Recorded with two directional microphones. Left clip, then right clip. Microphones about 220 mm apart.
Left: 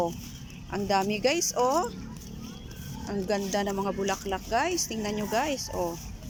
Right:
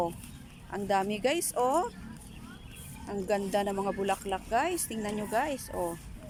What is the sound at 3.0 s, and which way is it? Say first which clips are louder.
Speech: left 1 dB; centre (ahead or behind).